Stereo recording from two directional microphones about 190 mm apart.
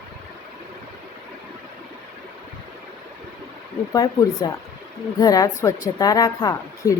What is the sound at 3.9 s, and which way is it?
A woman's voice, 20° left (ahead or behind).